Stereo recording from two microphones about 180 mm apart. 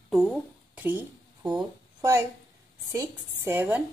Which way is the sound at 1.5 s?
15° right (ahead or behind).